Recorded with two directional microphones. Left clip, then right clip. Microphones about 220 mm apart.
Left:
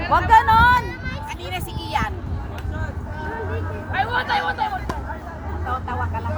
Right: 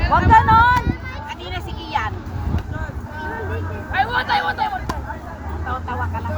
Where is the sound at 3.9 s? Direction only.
25° right (ahead or behind).